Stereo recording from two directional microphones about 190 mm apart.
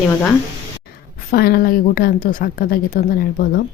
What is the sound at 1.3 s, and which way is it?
A woman's voice, 55° left (ahead or behind).